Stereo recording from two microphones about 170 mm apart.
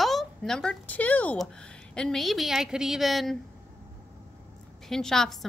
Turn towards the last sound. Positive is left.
turn(degrees=0)  # may be behind; listen again after turning